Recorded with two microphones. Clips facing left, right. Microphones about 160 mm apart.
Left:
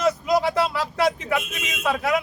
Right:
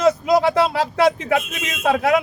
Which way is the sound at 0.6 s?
90° right.